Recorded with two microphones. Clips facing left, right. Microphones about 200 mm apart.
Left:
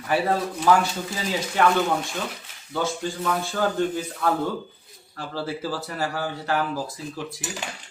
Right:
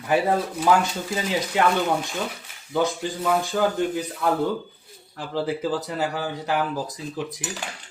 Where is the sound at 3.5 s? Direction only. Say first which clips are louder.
Right 2 dB; 15° right (ahead or behind).